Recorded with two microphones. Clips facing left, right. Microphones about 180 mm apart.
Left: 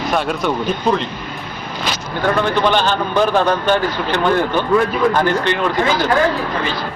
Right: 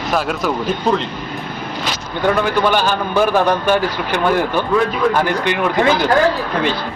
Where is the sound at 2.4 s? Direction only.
10° right (ahead or behind).